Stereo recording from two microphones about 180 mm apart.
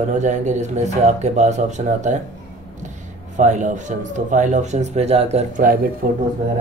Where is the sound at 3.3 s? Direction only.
45° right (ahead or behind).